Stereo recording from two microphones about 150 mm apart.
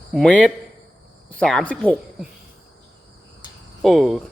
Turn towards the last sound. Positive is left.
turn(degrees=0)  # may be behind; listen again after turning